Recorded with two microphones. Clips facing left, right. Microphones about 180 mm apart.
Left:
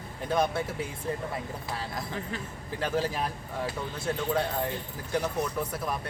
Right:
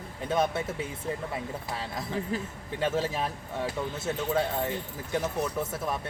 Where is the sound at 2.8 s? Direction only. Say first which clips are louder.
Right 1 dB; centre (ahead or behind).